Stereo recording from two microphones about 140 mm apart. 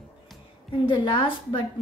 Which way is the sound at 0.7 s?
35° left (ahead or behind).